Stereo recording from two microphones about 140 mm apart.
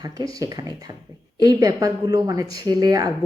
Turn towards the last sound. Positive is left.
turn(degrees=-25)  # may be behind; listen again after turning